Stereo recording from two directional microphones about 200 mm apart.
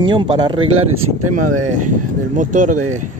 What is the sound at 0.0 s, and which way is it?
Speech, 25° right (ahead or behind).